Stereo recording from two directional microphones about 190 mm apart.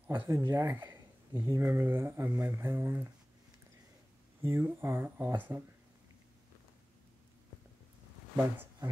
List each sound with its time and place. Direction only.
0.1 s speech: 15° right (ahead or behind)
4.4 s speech: 10° right (ahead or behind)
8.4 s speech: 15° right (ahead or behind)